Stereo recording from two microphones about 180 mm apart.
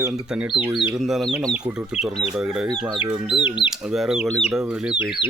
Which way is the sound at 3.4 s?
25° left (ahead or behind).